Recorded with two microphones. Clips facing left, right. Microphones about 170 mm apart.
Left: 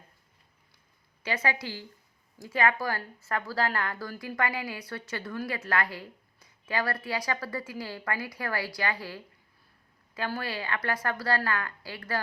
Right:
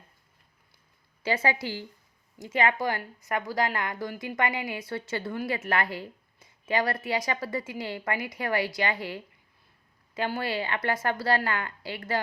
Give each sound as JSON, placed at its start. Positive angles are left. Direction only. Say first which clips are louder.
{"t": 1.2, "sound": "a woman's voice", "louder": "right 3 dB", "side_deg": -30}